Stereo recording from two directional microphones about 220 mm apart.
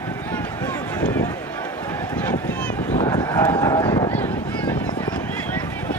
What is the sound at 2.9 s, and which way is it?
Vehicle, 20° left (ahead or behind).